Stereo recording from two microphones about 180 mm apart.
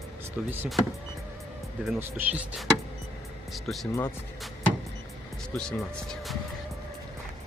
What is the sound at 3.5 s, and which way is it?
Speech, centre (ahead or behind).